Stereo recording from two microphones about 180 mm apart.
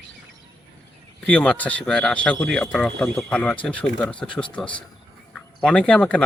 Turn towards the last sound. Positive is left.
turn(degrees=5)  # may be behind; listen again after turning